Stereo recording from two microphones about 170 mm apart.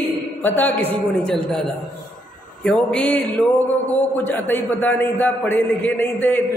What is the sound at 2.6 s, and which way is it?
A man's voice, 5° left (ahead or behind).